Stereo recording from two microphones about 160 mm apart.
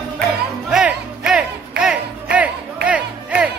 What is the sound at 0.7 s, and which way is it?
Music, 5° right (ahead or behind).